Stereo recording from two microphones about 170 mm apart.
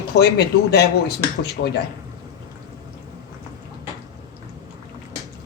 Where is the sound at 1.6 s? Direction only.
90° left.